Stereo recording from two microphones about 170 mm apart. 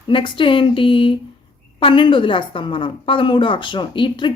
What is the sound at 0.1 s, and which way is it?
A woman's voice, 30° left (ahead or behind).